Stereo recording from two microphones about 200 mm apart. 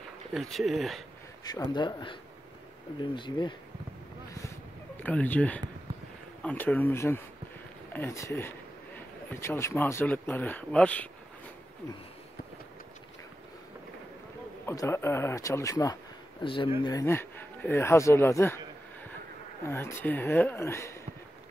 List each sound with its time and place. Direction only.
0.3 s speech: centre (ahead or behind)
1.4 s a man's voice: 20° left (ahead or behind)
5.0 s speech: 10° left (ahead or behind)
14.7 s a man's voice: 15° left (ahead or behind)
16.8 s speech: 15° left (ahead or behind)
19.7 s speech: 10° left (ahead or behind)